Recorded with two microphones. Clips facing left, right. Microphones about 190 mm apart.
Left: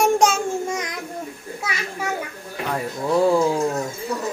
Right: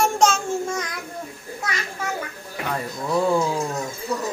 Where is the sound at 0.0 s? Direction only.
15° left (ahead or behind).